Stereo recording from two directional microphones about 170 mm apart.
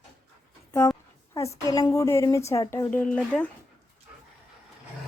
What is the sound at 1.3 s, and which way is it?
A woman's voice, 20° left (ahead or behind).